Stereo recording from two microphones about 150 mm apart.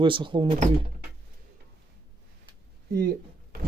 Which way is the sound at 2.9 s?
90° right.